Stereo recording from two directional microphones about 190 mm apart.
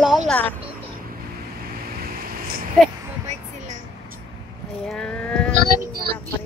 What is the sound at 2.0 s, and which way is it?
Vehicle, 50° right (ahead or behind).